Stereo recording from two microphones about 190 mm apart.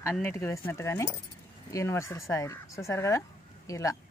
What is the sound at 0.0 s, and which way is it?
Speech, 10° left (ahead or behind).